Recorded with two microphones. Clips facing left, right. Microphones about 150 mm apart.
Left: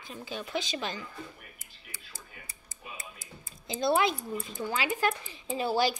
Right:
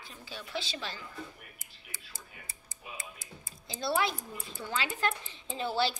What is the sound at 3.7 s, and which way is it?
Speech, 20° left (ahead or behind).